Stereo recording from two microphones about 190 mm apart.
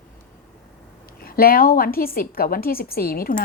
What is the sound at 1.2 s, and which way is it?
A woman's voice, 50° left (ahead or behind).